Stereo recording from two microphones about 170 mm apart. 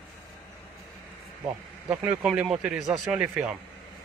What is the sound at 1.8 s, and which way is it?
Speech, 10° right (ahead or behind).